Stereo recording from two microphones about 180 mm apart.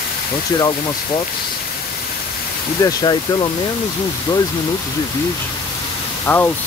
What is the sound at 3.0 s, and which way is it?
Speech, 25° left (ahead or behind).